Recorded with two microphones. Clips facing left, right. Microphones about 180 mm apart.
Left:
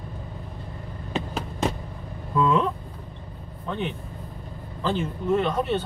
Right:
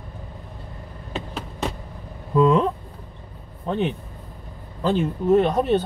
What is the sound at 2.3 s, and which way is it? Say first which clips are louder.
Speech: right 4 dB; 35° right (ahead or behind).